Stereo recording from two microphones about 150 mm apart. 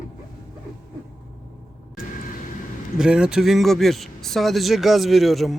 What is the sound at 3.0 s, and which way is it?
Speech, 5° right (ahead or behind).